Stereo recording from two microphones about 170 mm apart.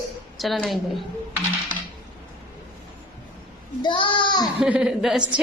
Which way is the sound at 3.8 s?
30° left (ahead or behind).